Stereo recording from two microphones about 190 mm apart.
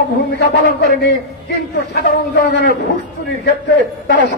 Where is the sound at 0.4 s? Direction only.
55° left (ahead or behind).